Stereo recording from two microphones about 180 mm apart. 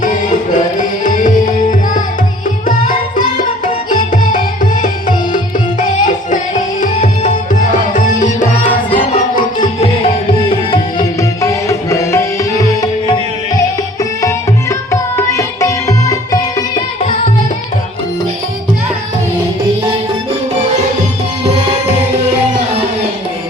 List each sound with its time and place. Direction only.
0.0 s music: 45° left (ahead or behind)
10.5 s music: 25° left (ahead or behind)